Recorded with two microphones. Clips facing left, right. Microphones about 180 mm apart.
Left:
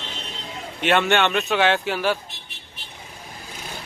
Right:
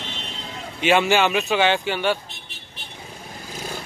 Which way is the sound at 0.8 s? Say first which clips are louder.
Right 1 dB; centre (ahead or behind).